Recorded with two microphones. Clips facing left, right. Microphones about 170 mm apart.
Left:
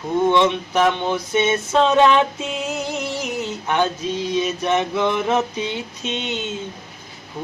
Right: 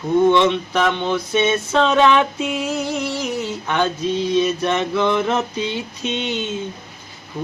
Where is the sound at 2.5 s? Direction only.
20° left (ahead or behind).